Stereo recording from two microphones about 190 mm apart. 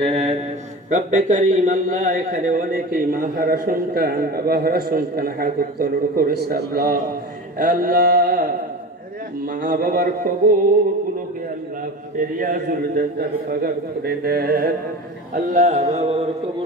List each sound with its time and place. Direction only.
0.8 s speech: 40° right (ahead or behind)
7.5 s a sound: 50° right (ahead or behind)
9.5 s speech: 45° right (ahead or behind)
12.4 s speech: 45° right (ahead or behind)
15.3 s mantra: 45° right (ahead or behind)